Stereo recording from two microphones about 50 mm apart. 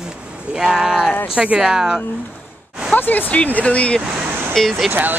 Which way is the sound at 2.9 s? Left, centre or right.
Left.